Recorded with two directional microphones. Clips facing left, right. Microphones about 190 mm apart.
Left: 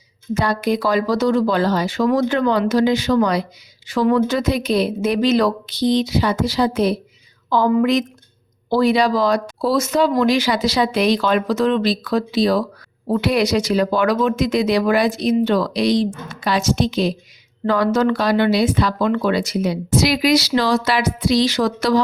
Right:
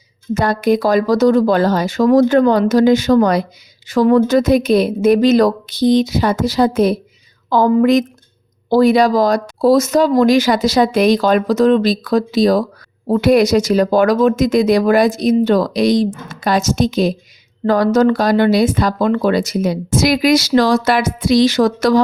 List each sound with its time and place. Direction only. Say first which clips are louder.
0.3 s speech: right 5 dB; 50° right (ahead or behind)